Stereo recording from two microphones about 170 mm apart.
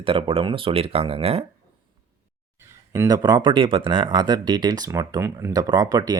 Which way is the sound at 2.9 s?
20° right (ahead or behind).